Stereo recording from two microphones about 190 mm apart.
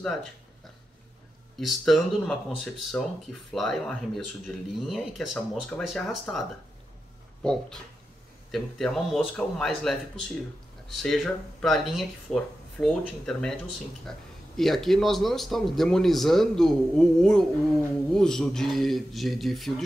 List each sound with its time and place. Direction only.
1.6 s speech: centre (ahead or behind)
7.4 s speech: 5° left (ahead or behind)
14.6 s speech: centre (ahead or behind)